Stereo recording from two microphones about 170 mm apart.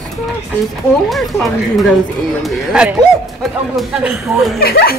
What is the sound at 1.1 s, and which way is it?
Speech, centre (ahead or behind).